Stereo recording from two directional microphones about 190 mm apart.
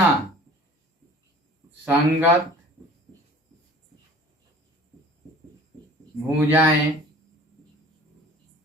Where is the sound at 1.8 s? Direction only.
10° right (ahead or behind).